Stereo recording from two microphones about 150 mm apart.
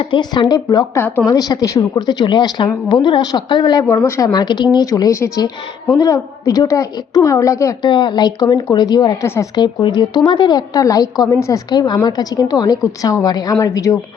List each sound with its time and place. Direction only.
0.0 s speech: 30° left (ahead or behind)
0.9 s speech: 10° left (ahead or behind)
1.3 s speech: 25° left (ahead or behind)
9.2 s speech: 15° left (ahead or behind)
9.6 s speech: 30° left (ahead or behind)